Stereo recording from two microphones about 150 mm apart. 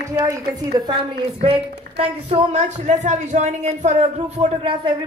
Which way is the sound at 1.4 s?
40° right (ahead or behind).